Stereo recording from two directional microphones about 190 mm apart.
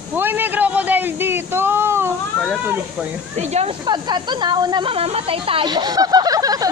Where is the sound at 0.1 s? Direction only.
10° right (ahead or behind).